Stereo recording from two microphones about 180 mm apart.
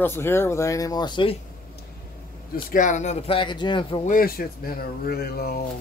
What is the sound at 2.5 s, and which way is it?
A man's voice, 45° left (ahead or behind).